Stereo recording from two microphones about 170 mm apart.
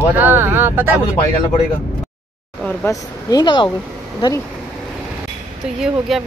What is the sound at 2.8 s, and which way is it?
Speech, 25° left (ahead or behind).